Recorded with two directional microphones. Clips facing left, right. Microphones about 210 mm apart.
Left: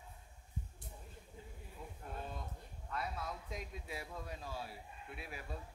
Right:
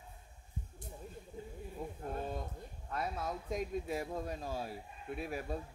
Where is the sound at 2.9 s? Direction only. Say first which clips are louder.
Right 4 dB; 45° right (ahead or behind).